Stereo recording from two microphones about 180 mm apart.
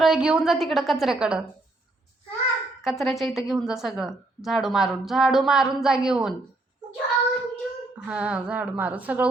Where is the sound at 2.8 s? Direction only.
Centre (ahead or behind).